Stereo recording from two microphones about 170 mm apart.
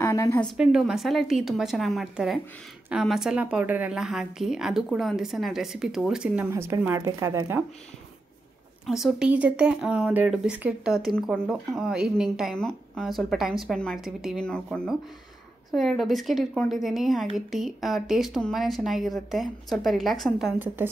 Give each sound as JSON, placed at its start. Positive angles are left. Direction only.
{"t": 0.0, "sound": "a sound", "side_deg": 20}
{"t": 0.6, "sound": "speech", "side_deg": -5}
{"t": 8.8, "sound": "speech", "side_deg": 0}